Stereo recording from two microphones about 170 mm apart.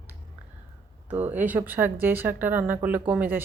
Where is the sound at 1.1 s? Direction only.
10° right (ahead or behind).